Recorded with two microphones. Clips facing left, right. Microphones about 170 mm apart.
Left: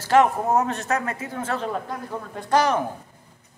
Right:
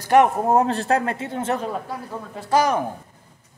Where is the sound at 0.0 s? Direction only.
20° right (ahead or behind).